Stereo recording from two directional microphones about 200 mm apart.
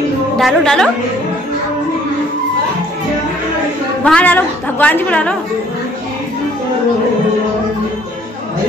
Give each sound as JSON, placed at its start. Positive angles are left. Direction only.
{"t": 0.4, "sound": "a woman's voice", "side_deg": 0}
{"t": 4.0, "sound": "a woman's voice", "side_deg": 5}